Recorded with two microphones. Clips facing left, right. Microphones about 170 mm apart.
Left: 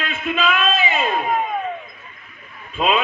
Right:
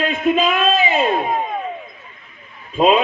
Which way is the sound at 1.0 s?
25° right (ahead or behind).